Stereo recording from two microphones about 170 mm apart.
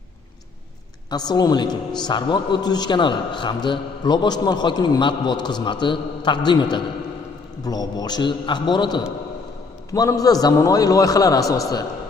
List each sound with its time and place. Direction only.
1.1 s a man's voice: 25° left (ahead or behind)